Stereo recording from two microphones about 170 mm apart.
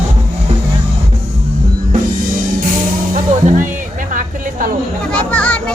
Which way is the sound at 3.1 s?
50° right (ahead or behind).